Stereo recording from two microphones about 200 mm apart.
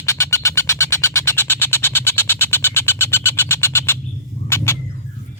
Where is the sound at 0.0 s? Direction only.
15° left (ahead or behind).